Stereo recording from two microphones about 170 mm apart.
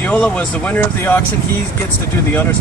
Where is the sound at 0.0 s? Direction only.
10° left (ahead or behind).